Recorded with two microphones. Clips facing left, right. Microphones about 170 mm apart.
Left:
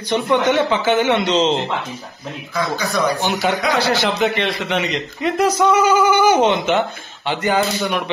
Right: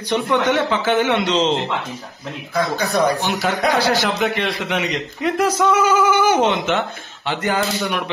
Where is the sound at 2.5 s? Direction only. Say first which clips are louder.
Right 2 dB; 60° right (ahead or behind).